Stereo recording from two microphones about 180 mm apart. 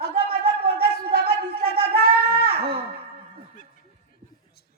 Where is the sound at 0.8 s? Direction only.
55° right (ahead or behind).